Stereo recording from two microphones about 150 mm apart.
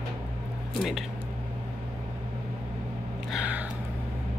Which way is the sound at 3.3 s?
10° right (ahead or behind).